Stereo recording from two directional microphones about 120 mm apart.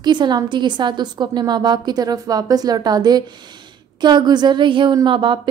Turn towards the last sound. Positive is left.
turn(degrees=-45)  # may be behind; listen again after turning